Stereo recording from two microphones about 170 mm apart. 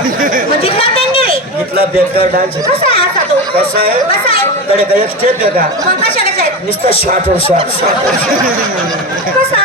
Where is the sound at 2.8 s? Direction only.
35° left (ahead or behind).